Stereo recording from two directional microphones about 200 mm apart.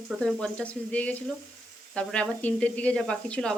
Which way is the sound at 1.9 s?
5° left (ahead or behind).